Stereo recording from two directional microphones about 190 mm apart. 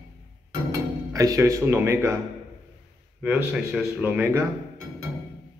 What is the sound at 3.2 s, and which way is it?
A man's voice, centre (ahead or behind).